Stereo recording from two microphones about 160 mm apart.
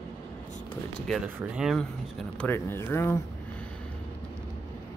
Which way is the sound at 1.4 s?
5° right (ahead or behind).